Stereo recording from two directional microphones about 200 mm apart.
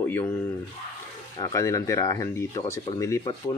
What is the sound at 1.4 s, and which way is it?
Speech, 15° left (ahead or behind).